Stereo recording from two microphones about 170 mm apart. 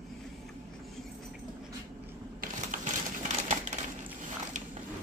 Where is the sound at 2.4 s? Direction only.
50° right (ahead or behind).